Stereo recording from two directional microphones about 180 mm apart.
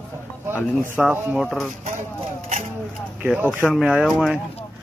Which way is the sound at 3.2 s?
10° right (ahead or behind).